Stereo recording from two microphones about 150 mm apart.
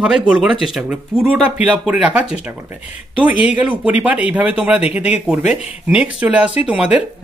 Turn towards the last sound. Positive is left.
turn(degrees=-5)  # may be behind; listen again after turning